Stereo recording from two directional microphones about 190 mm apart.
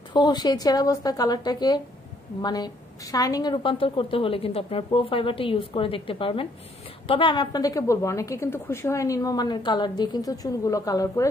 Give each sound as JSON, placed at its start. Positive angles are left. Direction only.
{"t": 0.1, "sound": "a woman's voice", "side_deg": 20}